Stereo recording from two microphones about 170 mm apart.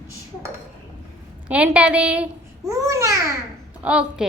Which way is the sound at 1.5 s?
5° right (ahead or behind).